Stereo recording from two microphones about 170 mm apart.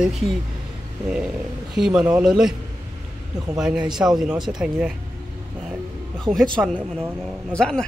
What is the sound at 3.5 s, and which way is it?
Speech, 5° right (ahead or behind).